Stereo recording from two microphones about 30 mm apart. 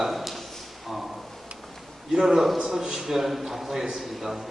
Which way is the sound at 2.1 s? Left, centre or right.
Right.